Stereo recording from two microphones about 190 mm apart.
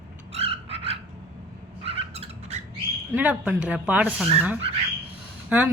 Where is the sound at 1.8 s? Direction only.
30° right (ahead or behind).